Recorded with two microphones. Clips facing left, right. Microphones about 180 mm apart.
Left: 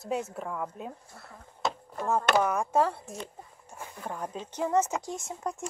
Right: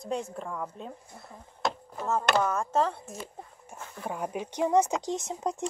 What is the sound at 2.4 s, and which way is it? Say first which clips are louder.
Speech: left 1 dB; 10° left (ahead or behind).